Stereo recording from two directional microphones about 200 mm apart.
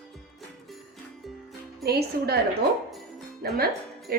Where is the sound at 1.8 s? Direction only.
50° right (ahead or behind).